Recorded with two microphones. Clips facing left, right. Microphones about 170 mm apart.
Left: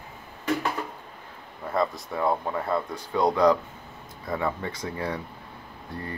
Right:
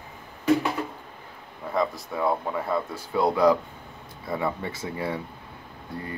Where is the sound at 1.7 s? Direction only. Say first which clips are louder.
Even; centre (ahead or behind).